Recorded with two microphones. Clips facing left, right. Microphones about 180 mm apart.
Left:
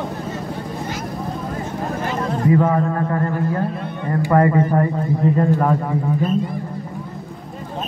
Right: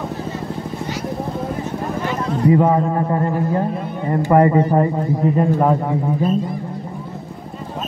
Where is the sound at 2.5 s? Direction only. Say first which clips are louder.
Right 2 dB; 20° right (ahead or behind).